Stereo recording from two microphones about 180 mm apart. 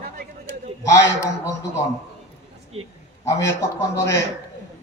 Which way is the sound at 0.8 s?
15° left (ahead or behind).